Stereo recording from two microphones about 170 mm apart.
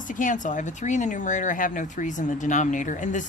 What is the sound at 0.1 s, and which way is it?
Speech, 50° left (ahead or behind).